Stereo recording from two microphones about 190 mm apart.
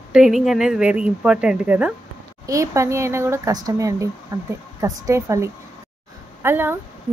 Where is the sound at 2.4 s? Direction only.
15° right (ahead or behind).